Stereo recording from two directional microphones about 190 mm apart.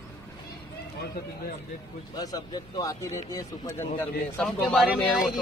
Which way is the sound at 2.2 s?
20° left (ahead or behind).